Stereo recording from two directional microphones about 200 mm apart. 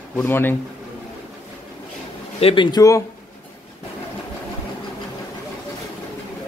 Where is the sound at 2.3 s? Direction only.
25° left (ahead or behind).